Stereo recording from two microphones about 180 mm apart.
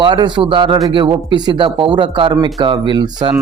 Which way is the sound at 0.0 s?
25° right (ahead or behind).